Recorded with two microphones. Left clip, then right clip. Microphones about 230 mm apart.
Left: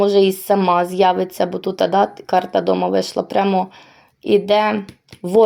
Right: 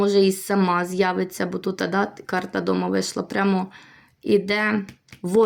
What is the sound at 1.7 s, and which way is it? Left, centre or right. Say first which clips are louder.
Speech: left 10 dB; right.